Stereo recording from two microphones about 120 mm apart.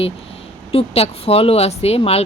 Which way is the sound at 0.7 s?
55° left (ahead or behind).